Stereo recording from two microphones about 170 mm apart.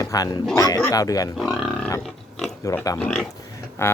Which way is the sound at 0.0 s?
20° left (ahead or behind).